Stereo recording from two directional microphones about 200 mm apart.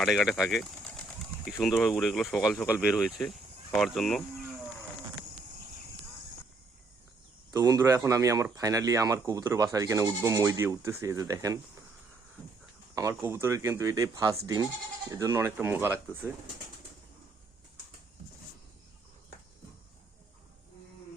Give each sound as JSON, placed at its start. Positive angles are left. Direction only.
{"t": 0.0, "sound": "speech", "side_deg": 0}
{"t": 7.5, "sound": "speech", "side_deg": -20}
{"t": 12.9, "sound": "speech", "side_deg": -15}